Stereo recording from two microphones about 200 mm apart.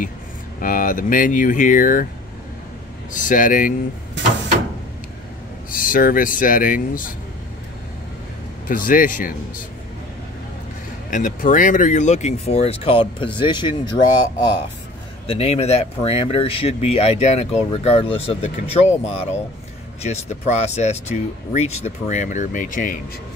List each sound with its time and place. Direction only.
0.6 s speech: 45° left (ahead or behind)
3.1 s speech: 40° left (ahead or behind)
5.7 s speech: 45° left (ahead or behind)
8.6 s speech: 45° left (ahead or behind)
11.1 s speech: 40° left (ahead or behind)